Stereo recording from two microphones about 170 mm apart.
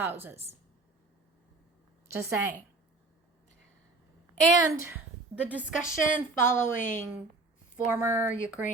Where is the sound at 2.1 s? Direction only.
15° right (ahead or behind).